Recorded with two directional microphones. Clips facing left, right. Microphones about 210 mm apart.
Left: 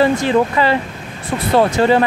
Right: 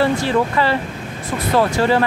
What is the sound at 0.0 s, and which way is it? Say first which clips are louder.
Speech: left 3 dB; 20° left (ahead or behind).